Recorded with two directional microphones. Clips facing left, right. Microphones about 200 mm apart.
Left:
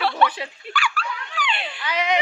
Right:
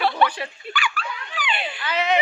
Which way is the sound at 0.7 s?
Centre (ahead or behind).